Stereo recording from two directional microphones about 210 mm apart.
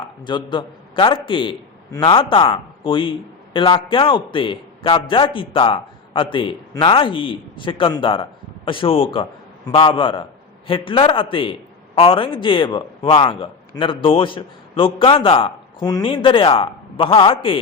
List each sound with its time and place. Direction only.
0.3 s a man's voice: 20° left (ahead or behind)